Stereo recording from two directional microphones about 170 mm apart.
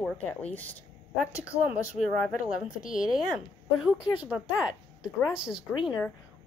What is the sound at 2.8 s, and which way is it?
Speech, 50° left (ahead or behind).